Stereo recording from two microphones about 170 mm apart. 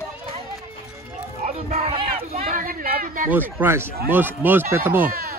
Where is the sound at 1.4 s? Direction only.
40° right (ahead or behind).